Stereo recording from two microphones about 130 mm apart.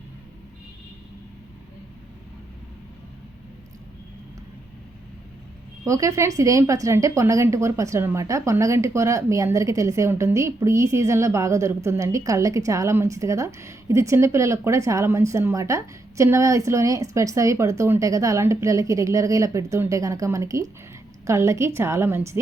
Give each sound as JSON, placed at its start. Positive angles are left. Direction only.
{"t": 5.8, "sound": "a woman's voice", "side_deg": -25}